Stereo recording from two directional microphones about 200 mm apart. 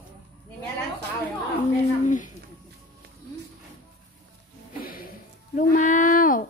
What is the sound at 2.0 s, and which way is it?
Speech, 40° left (ahead or behind).